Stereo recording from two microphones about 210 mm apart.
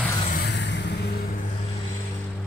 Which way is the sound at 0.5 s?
55° left (ahead or behind).